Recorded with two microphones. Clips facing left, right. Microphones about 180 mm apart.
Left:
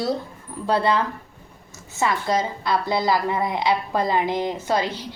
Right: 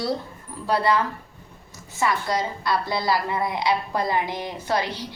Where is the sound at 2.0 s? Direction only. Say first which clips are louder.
Left 2 dB; 20° left (ahead or behind).